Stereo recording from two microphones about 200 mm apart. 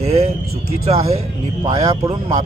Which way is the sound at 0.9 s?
30° right (ahead or behind).